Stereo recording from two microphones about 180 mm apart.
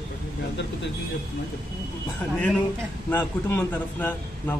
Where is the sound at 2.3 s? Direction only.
5° left (ahead or behind).